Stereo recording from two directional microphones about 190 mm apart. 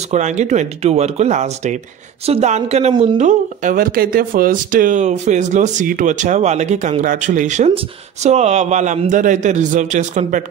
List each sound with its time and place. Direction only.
0.1 s speech: 40° right (ahead or behind)
2.9 s a man's voice: 25° right (ahead or behind)
3.2 s speech: 40° right (ahead or behind)